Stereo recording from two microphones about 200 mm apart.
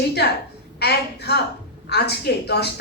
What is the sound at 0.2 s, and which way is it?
A woman's voice, 55° left (ahead or behind).